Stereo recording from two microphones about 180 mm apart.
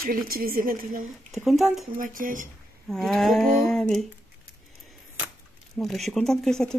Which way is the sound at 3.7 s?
5° left (ahead or behind).